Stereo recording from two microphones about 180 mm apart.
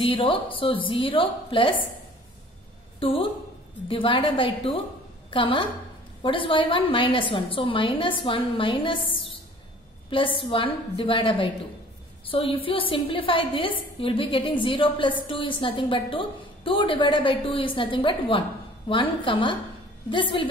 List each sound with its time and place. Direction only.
0.0 s a woman's voice: 30° left (ahead or behind)
3.0 s a woman's voice: 30° left (ahead or behind)
10.0 s a woman's voice: 30° left (ahead or behind)